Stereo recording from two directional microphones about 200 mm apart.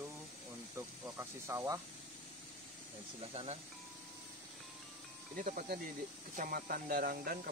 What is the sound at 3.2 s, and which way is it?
Speech, 30° right (ahead or behind).